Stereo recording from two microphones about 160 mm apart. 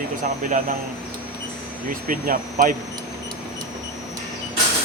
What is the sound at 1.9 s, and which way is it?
Speech, 60° right (ahead or behind).